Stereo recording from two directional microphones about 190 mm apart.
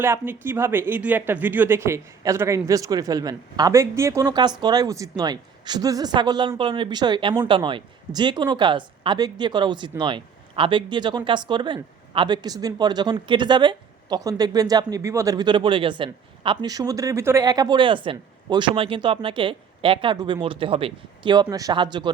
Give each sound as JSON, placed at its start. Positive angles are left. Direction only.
{"t": 0.0, "sound": "speech", "side_deg": -10}